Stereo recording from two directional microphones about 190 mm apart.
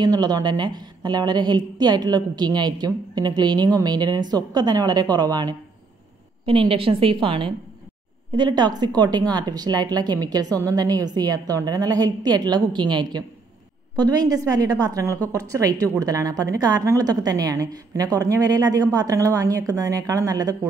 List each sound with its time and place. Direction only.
0.0 s a woman's voice: 20° right (ahead or behind)